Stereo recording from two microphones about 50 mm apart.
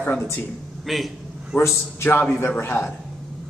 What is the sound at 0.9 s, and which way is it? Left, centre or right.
Speech, centre.